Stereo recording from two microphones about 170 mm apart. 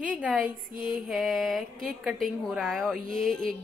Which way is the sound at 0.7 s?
55° right (ahead or behind).